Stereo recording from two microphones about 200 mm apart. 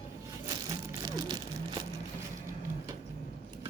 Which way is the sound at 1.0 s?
20° right (ahead or behind).